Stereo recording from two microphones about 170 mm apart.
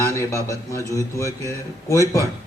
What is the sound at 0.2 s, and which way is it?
A man's voice, 20° left (ahead or behind).